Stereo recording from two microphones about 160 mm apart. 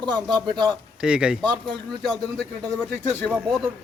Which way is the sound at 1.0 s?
5° right (ahead or behind).